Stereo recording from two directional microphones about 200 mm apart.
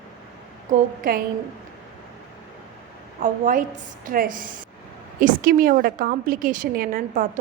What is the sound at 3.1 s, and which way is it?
A woman's voice, 40° right (ahead or behind).